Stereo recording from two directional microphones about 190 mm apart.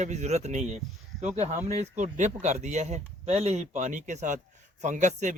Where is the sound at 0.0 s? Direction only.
35° right (ahead or behind).